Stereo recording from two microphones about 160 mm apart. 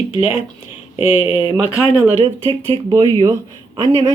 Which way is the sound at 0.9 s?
35° left (ahead or behind).